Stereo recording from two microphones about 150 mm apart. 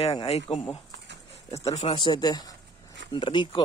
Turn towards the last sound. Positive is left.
turn(degrees=30)  # may be behind; listen again after turning